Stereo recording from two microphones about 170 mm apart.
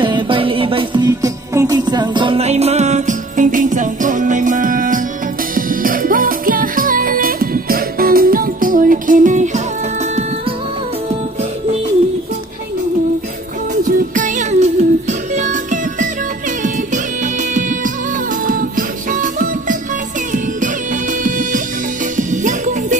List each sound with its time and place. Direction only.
0.0 s music: 30° right (ahead or behind)
13.8 s music: 50° right (ahead or behind)